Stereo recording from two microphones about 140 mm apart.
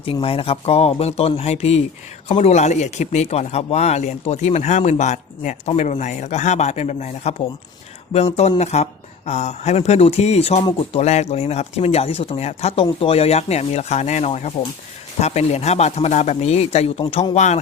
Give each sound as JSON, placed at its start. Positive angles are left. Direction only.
{"t": 0.0, "sound": "a man's voice", "side_deg": 40}